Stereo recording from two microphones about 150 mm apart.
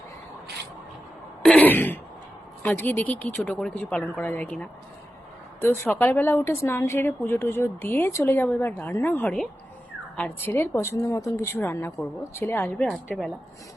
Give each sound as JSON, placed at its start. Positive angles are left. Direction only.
{"t": 1.4, "sound": "throat clearing", "side_deg": 10}
{"t": 2.6, "sound": "speech", "side_deg": 10}
{"t": 13.1, "sound": "a woman's voice", "side_deg": 5}